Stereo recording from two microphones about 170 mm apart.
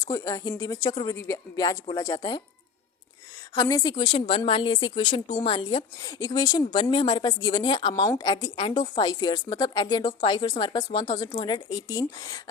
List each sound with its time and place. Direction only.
0.0 s a woman's voice: 20° left (ahead or behind)
3.5 s a woman's voice: 20° left (ahead or behind)